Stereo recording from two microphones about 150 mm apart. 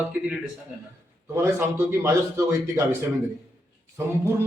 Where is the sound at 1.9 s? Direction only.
20° right (ahead or behind).